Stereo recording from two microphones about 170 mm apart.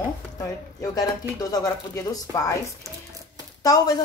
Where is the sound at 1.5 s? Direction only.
20° left (ahead or behind).